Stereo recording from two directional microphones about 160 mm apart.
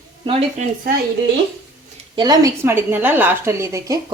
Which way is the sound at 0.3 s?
40° right (ahead or behind).